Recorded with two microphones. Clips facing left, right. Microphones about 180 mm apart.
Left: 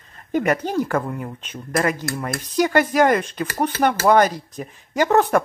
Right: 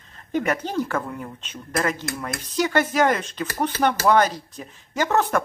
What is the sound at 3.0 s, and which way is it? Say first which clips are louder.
Speech: left 4 dB; 55° left (ahead or behind).